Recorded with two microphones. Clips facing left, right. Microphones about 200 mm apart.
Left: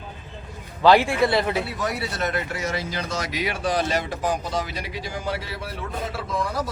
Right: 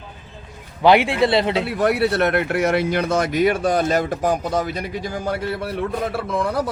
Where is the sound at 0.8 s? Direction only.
15° right (ahead or behind).